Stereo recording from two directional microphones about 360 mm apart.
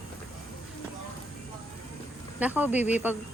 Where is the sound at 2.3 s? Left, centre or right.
Centre.